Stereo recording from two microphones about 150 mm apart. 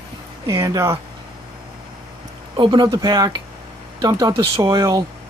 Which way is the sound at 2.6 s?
30° right (ahead or behind).